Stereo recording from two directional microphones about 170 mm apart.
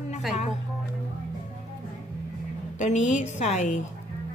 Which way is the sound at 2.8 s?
45° left (ahead or behind).